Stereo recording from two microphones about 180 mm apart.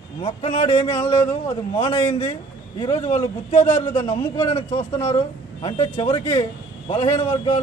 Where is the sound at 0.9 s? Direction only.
10° left (ahead or behind).